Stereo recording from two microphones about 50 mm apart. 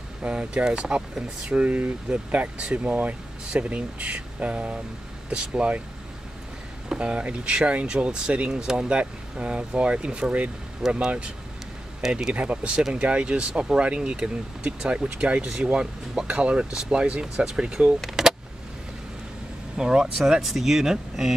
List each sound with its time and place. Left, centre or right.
0.2 s speech: centre
6.9 s speech: right
12.0 s speech: centre
12.4 s speech: right; by 18.3 s centre
19.8 s speech: centre